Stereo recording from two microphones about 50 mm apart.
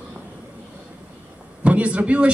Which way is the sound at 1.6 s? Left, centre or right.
Right.